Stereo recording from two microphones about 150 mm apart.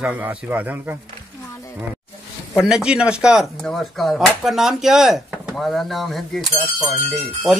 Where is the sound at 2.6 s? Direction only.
5° right (ahead or behind).